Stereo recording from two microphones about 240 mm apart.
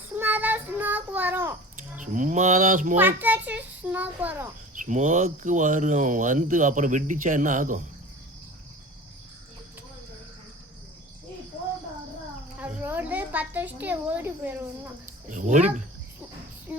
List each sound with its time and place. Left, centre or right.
0.2 s child singing: centre
2.0 s speech: right
3.0 s a child's voice: centre
4.7 s speech: right
12.5 s a sound: centre
15.0 s a sound: right
16.7 s music: centre